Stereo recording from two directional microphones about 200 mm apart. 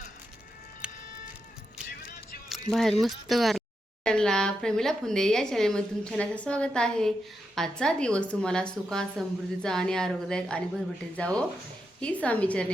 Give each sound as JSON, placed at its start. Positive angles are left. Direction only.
{"t": 0.8, "sound": "sheep", "side_deg": -5}
{"t": 2.7, "sound": "a woman's voice", "side_deg": 0}